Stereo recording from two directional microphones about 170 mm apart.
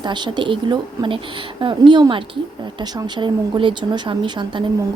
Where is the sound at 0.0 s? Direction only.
25° right (ahead or behind).